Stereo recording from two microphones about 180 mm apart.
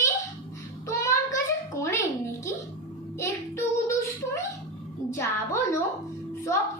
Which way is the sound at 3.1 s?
15° left (ahead or behind).